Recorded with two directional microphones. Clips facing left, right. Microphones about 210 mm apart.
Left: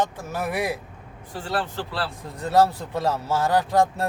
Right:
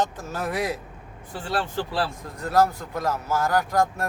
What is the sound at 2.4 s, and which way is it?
Speech, 25° left (ahead or behind).